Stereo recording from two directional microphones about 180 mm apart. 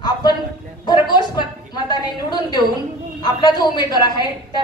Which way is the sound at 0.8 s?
25° left (ahead or behind).